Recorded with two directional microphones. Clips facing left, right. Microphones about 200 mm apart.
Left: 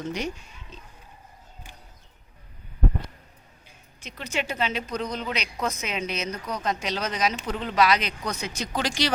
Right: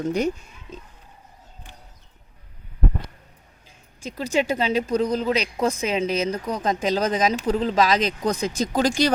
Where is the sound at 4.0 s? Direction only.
35° right (ahead or behind).